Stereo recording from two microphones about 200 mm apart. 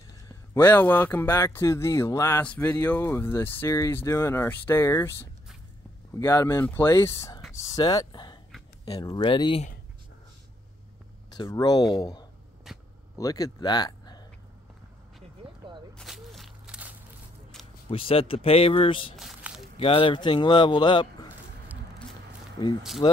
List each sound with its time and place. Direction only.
0.6 s speech: 10° left (ahead or behind)
6.1 s speech: 15° left (ahead or behind)
11.2 s speech: 20° left (ahead or behind)
12.7 s a sound: centre (ahead or behind)
13.2 s speech: 20° left (ahead or behind)
15.4 s a sound: 25° right (ahead or behind)
15.9 s walk: centre (ahead or behind)
17.8 s speech: 25° left (ahead or behind)
19.1 s a sound: centre (ahead or behind)
19.8 s speech: 25° left (ahead or behind)
23.0 s speech: 25° left (ahead or behind)